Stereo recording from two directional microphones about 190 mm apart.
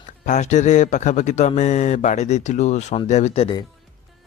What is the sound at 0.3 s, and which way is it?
Speech, 40° left (ahead or behind).